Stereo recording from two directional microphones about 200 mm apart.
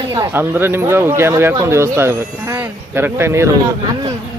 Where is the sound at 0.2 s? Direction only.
10° right (ahead or behind).